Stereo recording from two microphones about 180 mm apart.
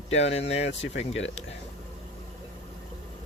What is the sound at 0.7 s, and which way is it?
Speech, 90° left.